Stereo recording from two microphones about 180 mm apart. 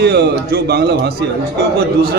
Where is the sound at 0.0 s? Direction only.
65° right (ahead or behind).